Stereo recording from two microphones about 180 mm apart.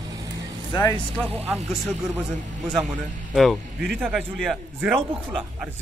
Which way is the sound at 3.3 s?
Centre (ahead or behind).